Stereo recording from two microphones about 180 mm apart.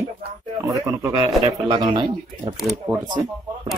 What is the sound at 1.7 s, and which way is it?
Speech, 25° right (ahead or behind).